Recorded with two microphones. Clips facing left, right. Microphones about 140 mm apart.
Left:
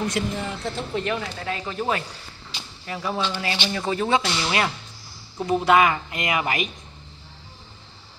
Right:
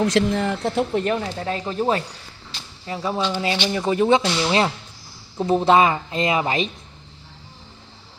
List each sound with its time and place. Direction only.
0.0 s speech: 80° right; by 1.0 s 55° right (ahead or behind)
1.0 s speech: 35° right (ahead or behind)